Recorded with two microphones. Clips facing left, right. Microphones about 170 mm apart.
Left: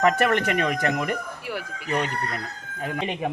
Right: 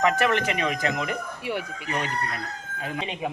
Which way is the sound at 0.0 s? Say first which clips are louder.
Left 2 dB; 55° left (ahead or behind).